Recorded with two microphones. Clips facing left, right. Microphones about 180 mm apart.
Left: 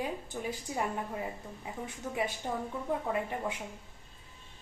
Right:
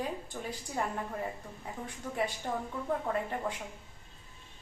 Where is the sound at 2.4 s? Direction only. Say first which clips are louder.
Even; 15° left (ahead or behind).